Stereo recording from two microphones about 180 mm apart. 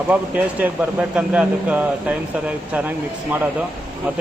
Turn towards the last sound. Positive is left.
turn(degrees=-10)  # may be behind; listen again after turning